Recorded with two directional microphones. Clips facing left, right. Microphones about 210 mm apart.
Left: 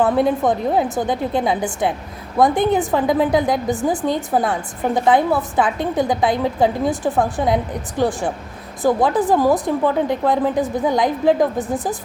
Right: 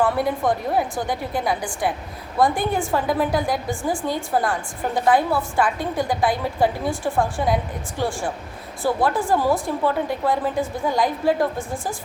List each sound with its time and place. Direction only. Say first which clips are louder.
0.0 s a woman's voice: left 4 dB; 20° left (ahead or behind)